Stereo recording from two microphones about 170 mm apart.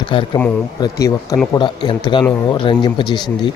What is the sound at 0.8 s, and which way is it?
Speech, 20° left (ahead or behind).